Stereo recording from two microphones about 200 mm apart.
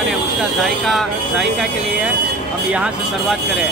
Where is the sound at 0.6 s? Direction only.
Centre (ahead or behind).